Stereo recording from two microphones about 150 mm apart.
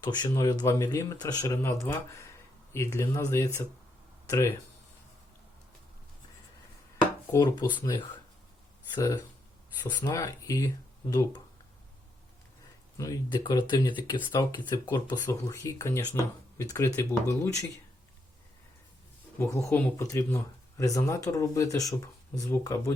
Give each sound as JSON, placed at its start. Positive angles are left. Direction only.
{"t": 0.0, "sound": "speech", "side_deg": 20}
{"t": 7.3, "sound": "speech", "side_deg": 25}
{"t": 10.0, "sound": "speech", "side_deg": 20}
{"t": 13.0, "sound": "speech", "side_deg": 25}
{"t": 19.4, "sound": "speech", "side_deg": 15}